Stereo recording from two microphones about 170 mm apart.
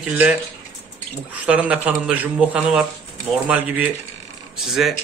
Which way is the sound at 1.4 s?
10° right (ahead or behind).